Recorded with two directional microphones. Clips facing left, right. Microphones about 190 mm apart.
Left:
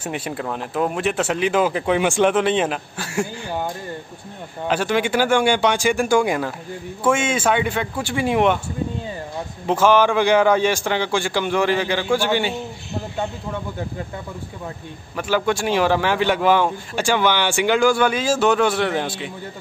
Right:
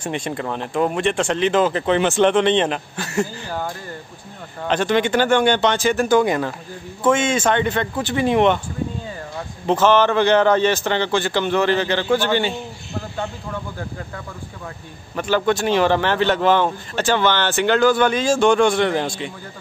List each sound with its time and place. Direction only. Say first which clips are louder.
0.0 s speech: right 2 dB; 5° left (ahead or behind)
3.4 s speech: left 1 dB; 20° left (ahead or behind)
4.6 s speech: right 2 dB; 10° left (ahead or behind)
9.7 s speech: even; 10° left (ahead or behind)
15.1 s speech: right 2 dB; 10° left (ahead or behind)